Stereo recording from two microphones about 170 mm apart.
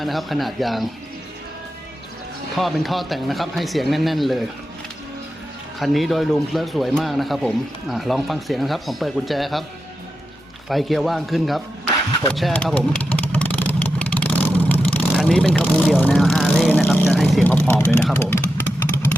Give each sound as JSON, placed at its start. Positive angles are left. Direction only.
{"t": 0.0, "sound": "speech", "side_deg": 0}
{"t": 2.6, "sound": "speech", "side_deg": 0}
{"t": 5.8, "sound": "speech", "side_deg": 0}
{"t": 10.7, "sound": "speech", "side_deg": 0}
{"t": 12.3, "sound": "vehicle", "side_deg": 5}
{"t": 15.2, "sound": "speech", "side_deg": 5}
{"t": 16.8, "sound": "vehicle", "side_deg": 10}